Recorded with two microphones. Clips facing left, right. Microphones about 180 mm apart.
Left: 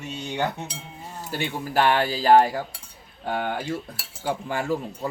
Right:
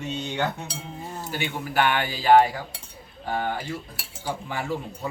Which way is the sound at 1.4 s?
35° left (ahead or behind).